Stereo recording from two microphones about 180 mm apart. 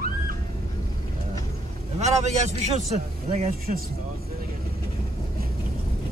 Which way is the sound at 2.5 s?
40° right (ahead or behind).